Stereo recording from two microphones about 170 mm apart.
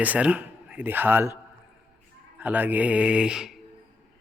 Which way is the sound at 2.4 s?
10° right (ahead or behind).